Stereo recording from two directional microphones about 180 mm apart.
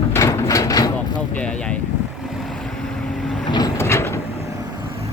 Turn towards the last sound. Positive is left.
turn(degrees=15)  # may be behind; listen again after turning